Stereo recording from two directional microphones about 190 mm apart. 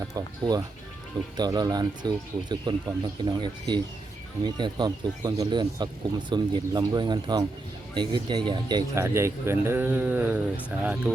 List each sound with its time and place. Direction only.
0.1 s speech: 20° right (ahead or behind)